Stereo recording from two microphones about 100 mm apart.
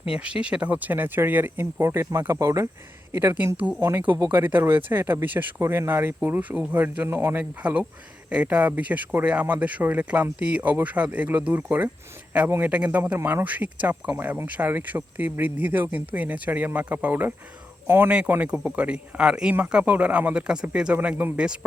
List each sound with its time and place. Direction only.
0.1 s speech: 10° right (ahead or behind)
4.0 s speech: 50° right (ahead or behind)
4.3 s speech: 20° right (ahead or behind)